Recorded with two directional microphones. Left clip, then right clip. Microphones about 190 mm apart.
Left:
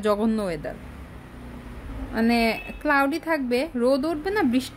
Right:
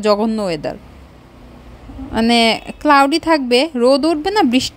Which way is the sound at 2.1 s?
35° right (ahead or behind).